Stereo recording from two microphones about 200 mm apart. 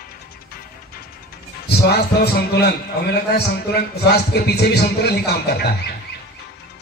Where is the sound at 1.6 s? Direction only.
55° left (ahead or behind).